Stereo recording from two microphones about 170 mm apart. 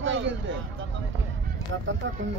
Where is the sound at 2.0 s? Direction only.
90° right.